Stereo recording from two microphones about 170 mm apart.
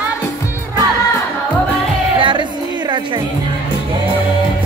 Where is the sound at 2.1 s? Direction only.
30° right (ahead or behind).